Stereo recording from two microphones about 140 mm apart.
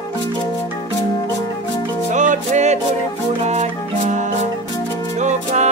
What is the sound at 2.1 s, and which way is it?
Music, 60° right (ahead or behind).